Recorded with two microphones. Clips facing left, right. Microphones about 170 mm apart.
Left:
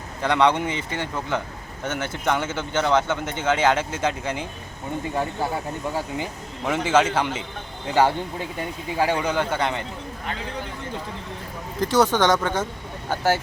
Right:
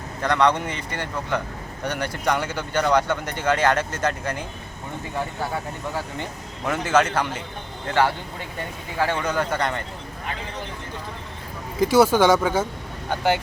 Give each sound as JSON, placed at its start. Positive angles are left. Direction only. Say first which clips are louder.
{"t": 0.2, "sound": "speech", "louder": "left 1 dB", "side_deg": 5}
{"t": 6.7, "sound": "speech", "louder": "left 1 dB", "side_deg": 5}
{"t": 7.9, "sound": "speech", "louder": "left 2 dB", "side_deg": 15}
{"t": 11.8, "sound": "speech", "louder": "right 3 dB", "side_deg": -10}
{"t": 13.1, "sound": "speech", "louder": "even", "side_deg": 5}